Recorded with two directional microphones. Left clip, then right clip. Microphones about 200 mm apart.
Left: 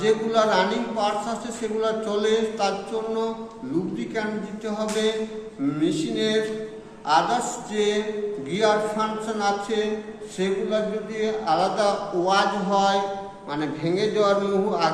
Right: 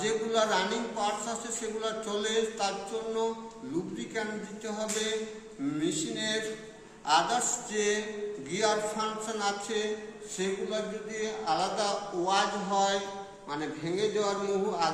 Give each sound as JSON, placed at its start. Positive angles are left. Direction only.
{"t": 0.0, "sound": "a man's voice", "side_deg": 5}
{"t": 3.9, "sound": "a man's voice", "side_deg": 0}